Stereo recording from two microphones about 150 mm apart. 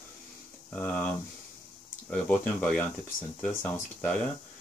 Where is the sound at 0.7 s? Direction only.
10° left (ahead or behind).